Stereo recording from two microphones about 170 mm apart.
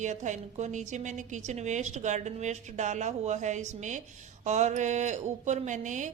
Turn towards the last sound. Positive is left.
turn(degrees=-45)  # may be behind; listen again after turning